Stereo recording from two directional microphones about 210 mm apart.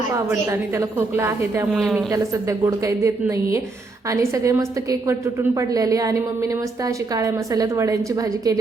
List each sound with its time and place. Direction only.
0.3 s a woman's voice: 10° right (ahead or behind)
1.7 s a woman's voice: centre (ahead or behind)
2.0 s a woman's voice: 15° right (ahead or behind)